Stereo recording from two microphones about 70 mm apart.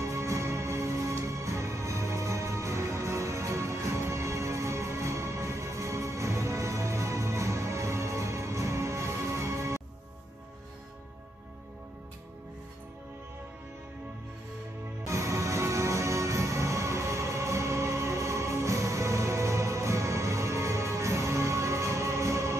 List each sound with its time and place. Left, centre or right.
0.0 s music: right
15.0 s music: right